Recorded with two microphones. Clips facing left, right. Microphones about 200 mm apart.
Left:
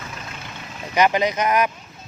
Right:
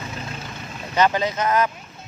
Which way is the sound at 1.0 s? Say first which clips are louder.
Left 1 dB; 15° left (ahead or behind).